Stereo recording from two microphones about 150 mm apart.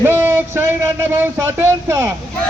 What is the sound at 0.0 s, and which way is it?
Speech, 15° right (ahead or behind).